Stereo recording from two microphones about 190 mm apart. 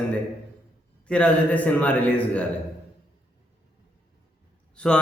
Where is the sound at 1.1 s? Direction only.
5° left (ahead or behind).